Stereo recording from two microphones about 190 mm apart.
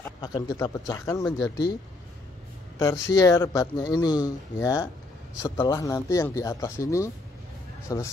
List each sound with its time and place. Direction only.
0.0 s speech: 20° left (ahead or behind)
2.8 s speech: 15° left (ahead or behind)